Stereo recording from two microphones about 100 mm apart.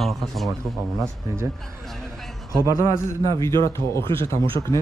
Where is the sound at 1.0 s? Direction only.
30° right (ahead or behind).